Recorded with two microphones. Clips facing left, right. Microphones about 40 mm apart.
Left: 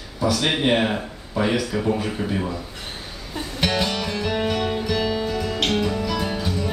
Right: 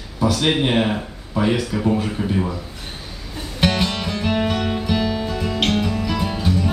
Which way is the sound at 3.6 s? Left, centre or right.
Centre.